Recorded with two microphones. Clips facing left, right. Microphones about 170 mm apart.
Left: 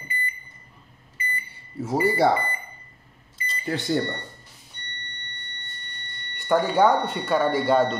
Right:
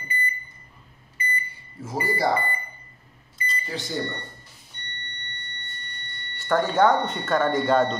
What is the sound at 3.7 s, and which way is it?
Speech, 55° left (ahead or behind).